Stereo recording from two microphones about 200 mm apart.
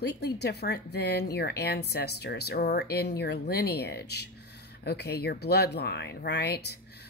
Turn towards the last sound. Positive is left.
turn(degrees=55)  # may be behind; listen again after turning